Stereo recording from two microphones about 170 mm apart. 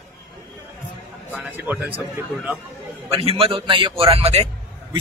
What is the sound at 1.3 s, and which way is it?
Speech, 10° right (ahead or behind).